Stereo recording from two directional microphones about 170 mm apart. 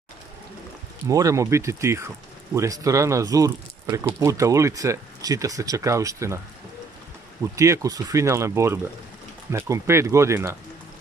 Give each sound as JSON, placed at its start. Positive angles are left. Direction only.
{"t": 1.0, "sound": "speech", "side_deg": -20}
{"t": 7.5, "sound": "speech", "side_deg": -20}